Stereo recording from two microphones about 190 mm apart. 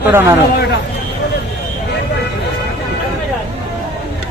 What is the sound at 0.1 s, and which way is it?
Speech, 15° right (ahead or behind).